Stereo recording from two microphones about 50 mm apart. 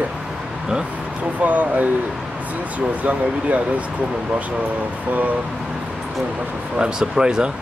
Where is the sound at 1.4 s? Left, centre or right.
Right.